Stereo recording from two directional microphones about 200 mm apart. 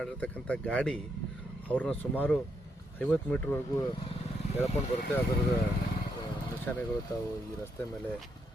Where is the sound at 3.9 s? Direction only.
25° left (ahead or behind).